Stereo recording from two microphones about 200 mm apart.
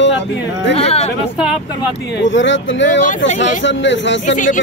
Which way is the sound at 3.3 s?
65° left (ahead or behind).